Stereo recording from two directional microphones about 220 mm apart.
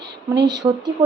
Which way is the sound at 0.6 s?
20° right (ahead or behind).